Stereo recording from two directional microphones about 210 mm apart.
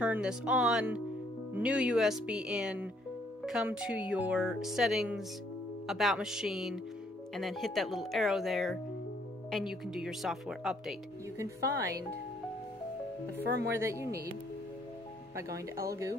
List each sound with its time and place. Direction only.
0.0 s speech: 5° right (ahead or behind)
11.3 s speech: 15° right (ahead or behind)
13.7 s speech: 10° right (ahead or behind)